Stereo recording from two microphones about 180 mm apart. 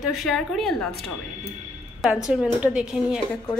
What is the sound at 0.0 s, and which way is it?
A woman's voice, centre (ahead or behind).